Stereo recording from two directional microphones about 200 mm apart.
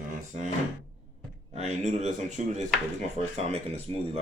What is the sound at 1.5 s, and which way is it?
Speech, 35° right (ahead or behind).